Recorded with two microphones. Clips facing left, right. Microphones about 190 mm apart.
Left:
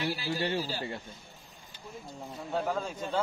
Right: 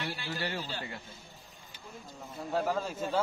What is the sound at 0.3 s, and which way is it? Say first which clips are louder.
Speech: left 5 dB; 25° left (ahead or behind).